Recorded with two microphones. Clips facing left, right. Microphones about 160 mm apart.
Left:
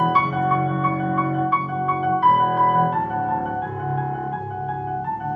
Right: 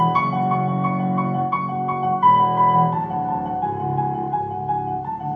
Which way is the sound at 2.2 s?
40° right (ahead or behind).